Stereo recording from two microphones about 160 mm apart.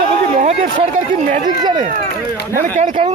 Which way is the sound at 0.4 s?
45° right (ahead or behind).